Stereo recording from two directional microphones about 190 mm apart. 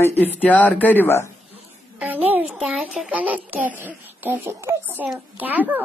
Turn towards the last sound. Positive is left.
turn(degrees=-10)  # may be behind; listen again after turning